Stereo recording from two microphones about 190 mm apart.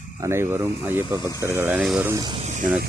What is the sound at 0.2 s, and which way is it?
Speech, 15° right (ahead or behind).